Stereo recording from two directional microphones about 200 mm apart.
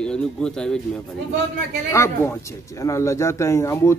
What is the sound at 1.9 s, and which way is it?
Speech, 15° left (ahead or behind).